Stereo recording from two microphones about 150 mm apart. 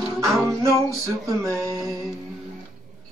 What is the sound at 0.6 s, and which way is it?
Music, 20° right (ahead or behind).